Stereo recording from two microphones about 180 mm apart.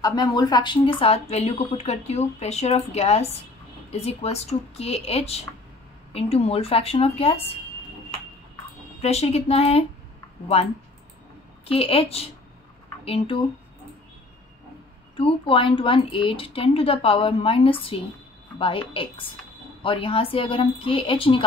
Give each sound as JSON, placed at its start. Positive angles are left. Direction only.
{"t": 0.0, "sound": "speech", "side_deg": 20}
{"t": 9.0, "sound": "speech", "side_deg": 35}
{"t": 11.6, "sound": "speech", "side_deg": 30}
{"t": 15.1, "sound": "a woman's voice", "side_deg": 30}